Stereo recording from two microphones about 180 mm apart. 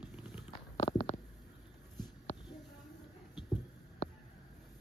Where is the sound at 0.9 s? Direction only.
20° left (ahead or behind).